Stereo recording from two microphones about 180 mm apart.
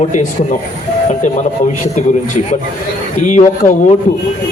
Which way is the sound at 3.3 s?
40° left (ahead or behind).